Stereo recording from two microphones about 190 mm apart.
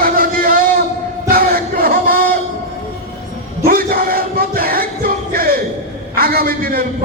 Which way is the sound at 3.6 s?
50° right (ahead or behind).